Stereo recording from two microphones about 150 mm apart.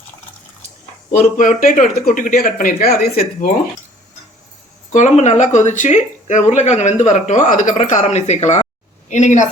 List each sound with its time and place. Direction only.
1.2 s speech: 60° left (ahead or behind)
4.9 s speech: 50° left (ahead or behind)